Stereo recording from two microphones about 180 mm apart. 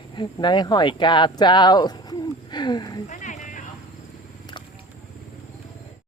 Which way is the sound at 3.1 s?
45° left (ahead or behind).